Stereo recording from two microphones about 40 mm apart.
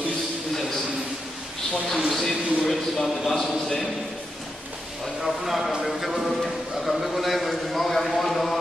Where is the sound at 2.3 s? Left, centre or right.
Right.